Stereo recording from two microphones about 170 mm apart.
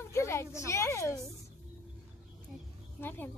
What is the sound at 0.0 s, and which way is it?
A woman's voice, 15° left (ahead or behind).